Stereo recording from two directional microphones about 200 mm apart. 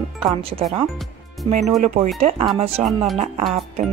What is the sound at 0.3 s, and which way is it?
A woman's voice, 25° right (ahead or behind).